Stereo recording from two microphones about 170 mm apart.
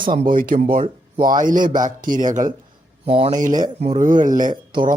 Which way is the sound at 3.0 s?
35° right (ahead or behind).